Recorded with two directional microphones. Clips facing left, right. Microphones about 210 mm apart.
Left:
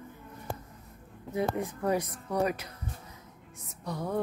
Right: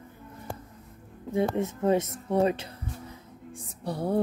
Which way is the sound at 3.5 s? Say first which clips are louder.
Right 4 dB; 30° right (ahead or behind).